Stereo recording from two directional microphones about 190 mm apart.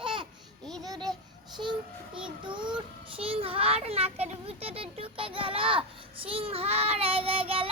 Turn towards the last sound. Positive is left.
turn(degrees=-30)  # may be behind; listen again after turning